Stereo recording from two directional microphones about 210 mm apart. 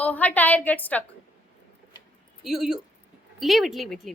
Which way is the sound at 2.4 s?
Centre (ahead or behind).